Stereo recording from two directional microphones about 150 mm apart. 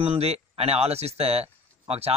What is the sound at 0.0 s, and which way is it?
Speech, 45° right (ahead or behind).